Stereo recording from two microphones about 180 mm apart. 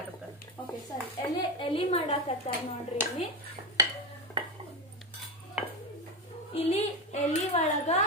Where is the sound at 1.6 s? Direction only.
30° left (ahead or behind).